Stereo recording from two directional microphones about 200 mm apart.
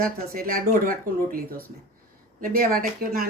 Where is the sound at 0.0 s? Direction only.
45° right (ahead or behind).